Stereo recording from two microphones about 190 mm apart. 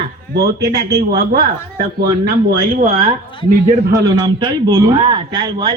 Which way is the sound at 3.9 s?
20° right (ahead or behind).